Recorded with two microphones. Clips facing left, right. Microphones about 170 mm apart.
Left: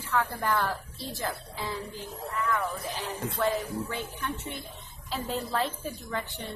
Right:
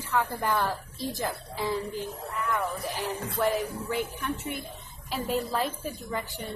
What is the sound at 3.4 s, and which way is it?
A woman's voice, 5° right (ahead or behind).